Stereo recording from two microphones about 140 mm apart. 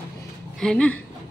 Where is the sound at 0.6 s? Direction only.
5° left (ahead or behind).